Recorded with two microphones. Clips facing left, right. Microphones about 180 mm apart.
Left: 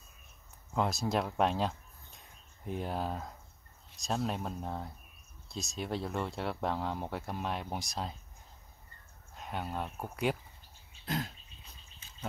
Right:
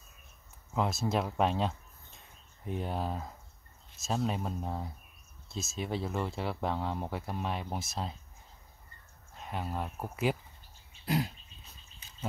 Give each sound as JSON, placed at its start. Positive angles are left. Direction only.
{"t": 0.7, "sound": "speech", "side_deg": 0}
{"t": 9.3, "sound": "speech", "side_deg": 0}
{"t": 11.1, "sound": "a sound", "side_deg": -10}